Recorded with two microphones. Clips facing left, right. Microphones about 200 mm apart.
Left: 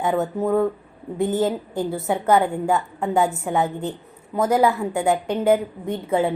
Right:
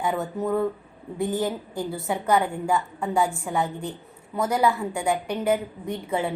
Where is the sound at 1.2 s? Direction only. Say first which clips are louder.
Left 5 dB; 20° left (ahead or behind).